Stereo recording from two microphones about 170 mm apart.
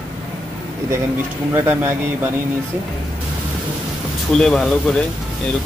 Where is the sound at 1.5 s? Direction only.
15° right (ahead or behind).